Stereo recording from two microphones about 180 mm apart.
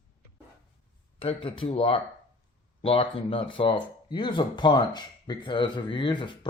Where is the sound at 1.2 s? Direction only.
30° left (ahead or behind).